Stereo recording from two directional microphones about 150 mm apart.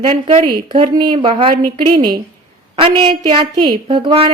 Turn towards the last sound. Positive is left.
turn(degrees=-35)  # may be behind; listen again after turning